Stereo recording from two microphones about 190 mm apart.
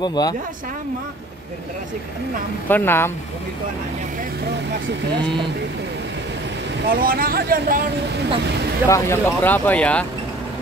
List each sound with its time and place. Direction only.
0.0 s speech: 20° left (ahead or behind)
2.7 s speech: 10° left (ahead or behind)
6.9 s speech: 50° right (ahead or behind)
8.8 s speech: 15° left (ahead or behind)